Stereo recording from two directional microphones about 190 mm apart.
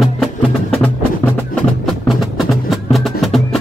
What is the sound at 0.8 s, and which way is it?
Music, 10° left (ahead or behind).